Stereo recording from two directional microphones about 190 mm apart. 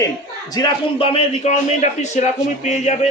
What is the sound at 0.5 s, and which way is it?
A man's voice, 25° left (ahead or behind).